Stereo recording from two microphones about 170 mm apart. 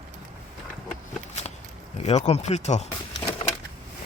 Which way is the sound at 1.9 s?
40° left (ahead or behind).